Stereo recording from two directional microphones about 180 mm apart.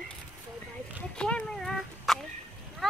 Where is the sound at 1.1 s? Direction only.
5° left (ahead or behind).